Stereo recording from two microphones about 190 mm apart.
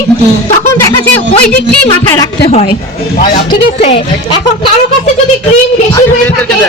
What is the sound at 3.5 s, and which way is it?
Speech, 30° left (ahead or behind).